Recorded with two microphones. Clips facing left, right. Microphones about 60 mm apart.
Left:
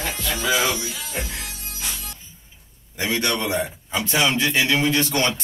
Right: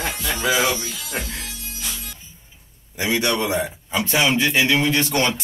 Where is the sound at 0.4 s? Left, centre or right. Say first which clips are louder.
Right 2 dB; centre.